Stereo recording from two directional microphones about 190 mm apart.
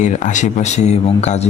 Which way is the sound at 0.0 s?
40° left (ahead or behind).